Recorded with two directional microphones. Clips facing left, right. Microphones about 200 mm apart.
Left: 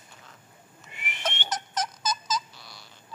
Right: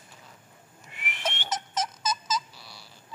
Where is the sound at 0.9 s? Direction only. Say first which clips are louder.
Even; centre (ahead or behind).